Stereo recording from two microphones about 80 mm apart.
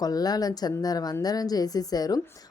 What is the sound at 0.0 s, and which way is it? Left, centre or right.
A woman's voice, left.